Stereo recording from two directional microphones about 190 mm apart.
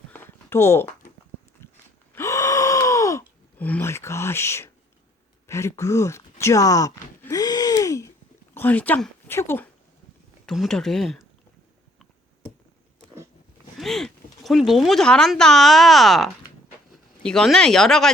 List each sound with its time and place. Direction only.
0.1 s a sound: 10° left (ahead or behind)
2.1 s gasp: 15° left (ahead or behind)
5.5 s speech: 15° left (ahead or behind)
6.4 s groan: 15° left (ahead or behind)
8.5 s speech: 10° left (ahead or behind)
10.4 s speech: centre (ahead or behind)
13.7 s speech: centre (ahead or behind)